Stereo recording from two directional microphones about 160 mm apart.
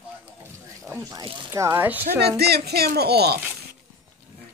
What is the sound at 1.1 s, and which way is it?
Speech, 20° right (ahead or behind).